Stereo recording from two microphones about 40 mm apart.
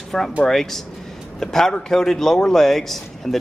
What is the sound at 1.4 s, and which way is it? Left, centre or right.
Speech, centre.